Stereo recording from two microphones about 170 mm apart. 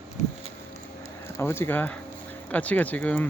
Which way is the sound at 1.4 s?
15° left (ahead or behind).